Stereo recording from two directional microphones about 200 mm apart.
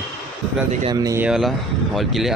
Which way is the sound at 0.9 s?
15° right (ahead or behind).